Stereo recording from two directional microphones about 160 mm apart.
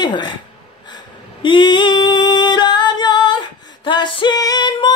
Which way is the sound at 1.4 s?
30° left (ahead or behind).